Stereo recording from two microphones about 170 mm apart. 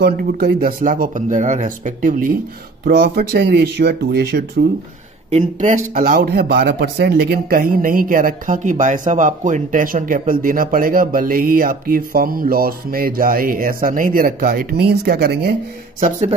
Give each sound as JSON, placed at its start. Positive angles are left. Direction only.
{"t": 0.0, "sound": "speech", "side_deg": -65}
{"t": 5.3, "sound": "speech", "side_deg": -45}
{"t": 16.0, "sound": "a man's voice", "side_deg": -40}